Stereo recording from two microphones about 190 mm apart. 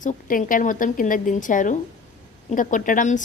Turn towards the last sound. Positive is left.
turn(degrees=40)  # may be behind; listen again after turning